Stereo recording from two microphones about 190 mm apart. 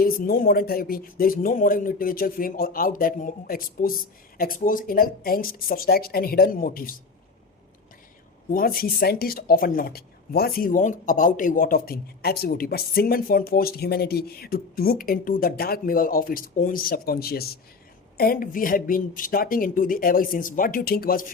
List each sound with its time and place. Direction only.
0.0 s speech: 50° left (ahead or behind)
8.4 s speech: 50° left (ahead or behind)